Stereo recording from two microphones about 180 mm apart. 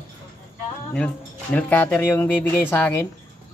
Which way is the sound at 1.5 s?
10° left (ahead or behind).